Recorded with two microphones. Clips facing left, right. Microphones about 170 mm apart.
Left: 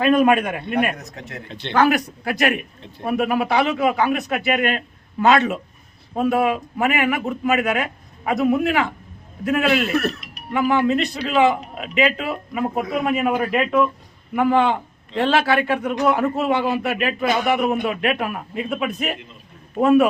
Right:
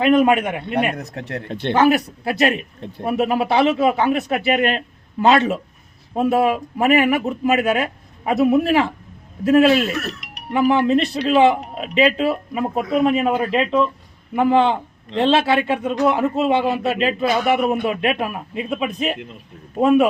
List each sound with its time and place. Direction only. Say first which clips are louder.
0.0 s a man's voice: right 1 dB; 20° right (ahead or behind)
0.9 s speech: right 6 dB; 60° right (ahead or behind)
1.7 s a man's voice: right 2 dB; 25° right (ahead or behind)
10.1 s music: left 1 dB; 80° right
10.5 s a man's voice: right 3 dB; 25° right (ahead or behind)